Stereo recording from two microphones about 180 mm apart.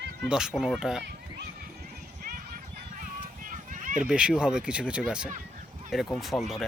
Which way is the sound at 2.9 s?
50° right (ahead or behind).